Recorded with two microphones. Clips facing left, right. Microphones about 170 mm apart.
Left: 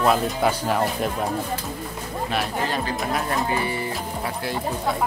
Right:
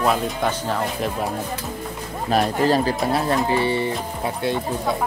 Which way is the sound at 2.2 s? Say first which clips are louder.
Right 8 dB; 40° right (ahead or behind).